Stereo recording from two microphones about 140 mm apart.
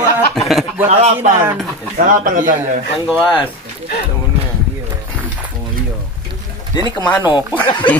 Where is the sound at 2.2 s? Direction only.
70° right (ahead or behind).